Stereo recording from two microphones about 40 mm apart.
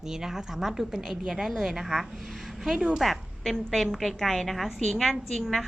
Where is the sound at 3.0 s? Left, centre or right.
Centre.